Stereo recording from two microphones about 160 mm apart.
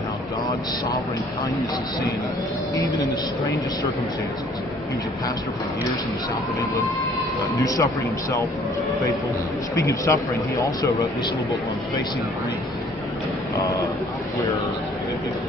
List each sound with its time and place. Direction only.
2.7 s speech: 20° left (ahead or behind)
7.6 s speech: 20° left (ahead or behind)
9.8 s speech: 20° left (ahead or behind)
13.6 s speech: 20° left (ahead or behind)